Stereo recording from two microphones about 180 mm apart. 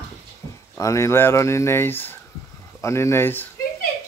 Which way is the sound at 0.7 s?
15° left (ahead or behind).